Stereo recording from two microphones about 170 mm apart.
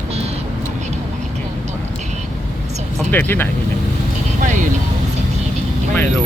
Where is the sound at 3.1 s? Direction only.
10° left (ahead or behind).